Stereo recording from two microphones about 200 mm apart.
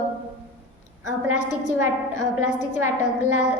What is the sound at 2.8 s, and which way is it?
Speech, 90° right.